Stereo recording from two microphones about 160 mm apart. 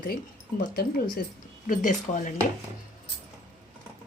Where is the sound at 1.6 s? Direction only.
55° left (ahead or behind).